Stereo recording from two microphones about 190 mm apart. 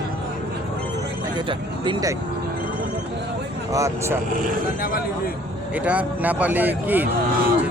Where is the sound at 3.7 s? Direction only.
15° right (ahead or behind).